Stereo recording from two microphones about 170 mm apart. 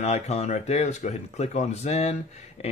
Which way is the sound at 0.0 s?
40° left (ahead or behind).